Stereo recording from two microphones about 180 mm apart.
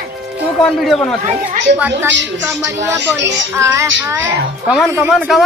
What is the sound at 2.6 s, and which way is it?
Child singing, 15° right (ahead or behind).